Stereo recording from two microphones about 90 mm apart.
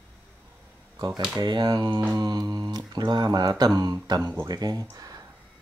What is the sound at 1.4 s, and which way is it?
Speech, 55° right (ahead or behind).